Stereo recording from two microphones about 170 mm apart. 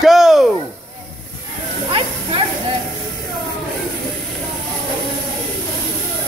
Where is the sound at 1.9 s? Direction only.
30° right (ahead or behind).